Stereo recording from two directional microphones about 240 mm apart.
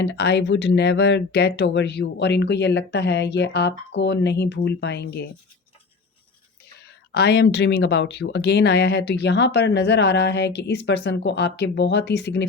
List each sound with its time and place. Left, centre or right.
0.0 s speech: left
7.1 s speech: left